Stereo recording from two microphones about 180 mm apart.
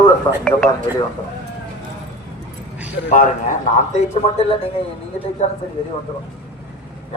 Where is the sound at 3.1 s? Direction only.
45° left (ahead or behind).